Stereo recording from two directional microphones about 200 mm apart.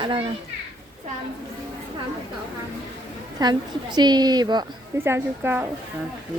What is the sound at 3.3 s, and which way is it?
A woman's voice, 20° right (ahead or behind).